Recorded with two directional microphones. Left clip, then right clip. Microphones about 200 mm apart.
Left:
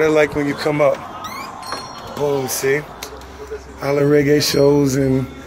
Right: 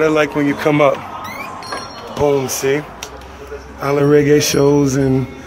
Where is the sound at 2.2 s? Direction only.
15° right (ahead or behind).